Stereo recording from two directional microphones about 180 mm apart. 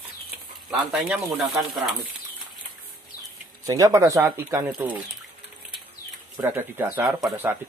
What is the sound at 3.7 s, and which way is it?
Speech, 20° right (ahead or behind).